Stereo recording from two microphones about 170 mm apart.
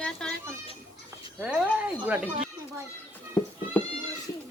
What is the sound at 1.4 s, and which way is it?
Speech, 5° right (ahead or behind).